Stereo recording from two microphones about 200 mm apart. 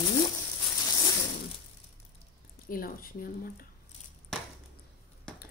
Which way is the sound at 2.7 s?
45° left (ahead or behind).